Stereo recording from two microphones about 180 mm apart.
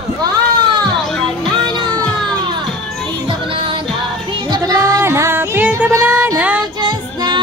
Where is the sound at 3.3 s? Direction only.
30° right (ahead or behind); by 6.5 s 10° right (ahead or behind).